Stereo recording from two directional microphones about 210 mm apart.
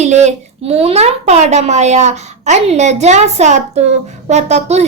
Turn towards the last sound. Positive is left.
turn(degrees=-30)  # may be behind; listen again after turning